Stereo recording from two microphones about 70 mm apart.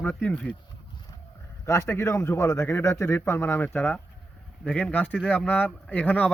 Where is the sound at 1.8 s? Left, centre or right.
Left.